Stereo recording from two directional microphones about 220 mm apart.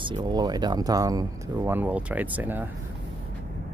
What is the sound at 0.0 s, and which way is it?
Speech, 20° right (ahead or behind).